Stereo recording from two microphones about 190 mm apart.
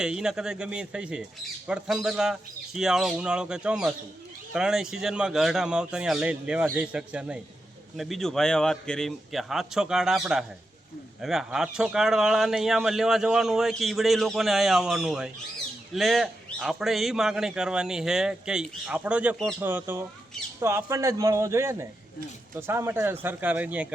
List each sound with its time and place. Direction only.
0.0 s speech: 5° right (ahead or behind)